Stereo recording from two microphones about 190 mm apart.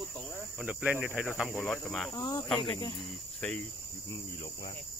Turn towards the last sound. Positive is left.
turn(degrees=5)  # may be behind; listen again after turning